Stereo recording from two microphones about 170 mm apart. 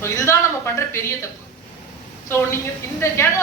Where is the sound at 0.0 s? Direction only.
15° left (ahead or behind).